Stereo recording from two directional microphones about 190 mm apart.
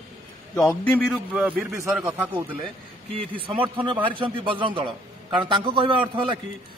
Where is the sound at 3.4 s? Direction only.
25° right (ahead or behind).